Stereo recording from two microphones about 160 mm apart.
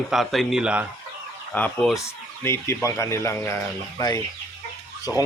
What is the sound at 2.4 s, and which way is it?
Speech, 15° left (ahead or behind).